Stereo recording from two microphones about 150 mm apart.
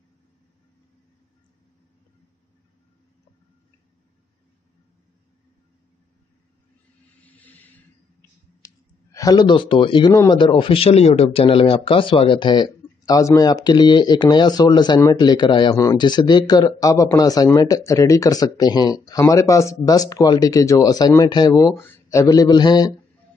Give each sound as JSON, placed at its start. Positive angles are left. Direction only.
{"t": 7.2, "sound": "vehicle", "side_deg": 10}
{"t": 8.6, "sound": "a sound", "side_deg": 25}
{"t": 10.1, "sound": "speech", "side_deg": 30}